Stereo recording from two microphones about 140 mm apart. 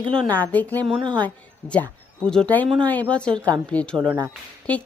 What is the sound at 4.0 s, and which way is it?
Speech, 35° right (ahead or behind).